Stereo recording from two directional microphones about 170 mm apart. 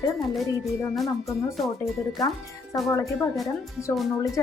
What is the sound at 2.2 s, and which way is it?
Speech, 20° left (ahead or behind).